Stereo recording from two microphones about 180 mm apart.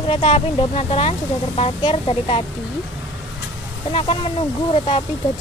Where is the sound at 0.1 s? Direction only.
35° left (ahead or behind).